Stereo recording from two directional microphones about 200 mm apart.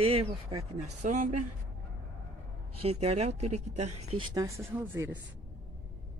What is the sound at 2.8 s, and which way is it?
Speech, 30° right (ahead or behind).